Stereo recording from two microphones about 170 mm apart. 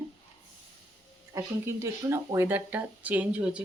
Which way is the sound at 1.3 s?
15° right (ahead or behind).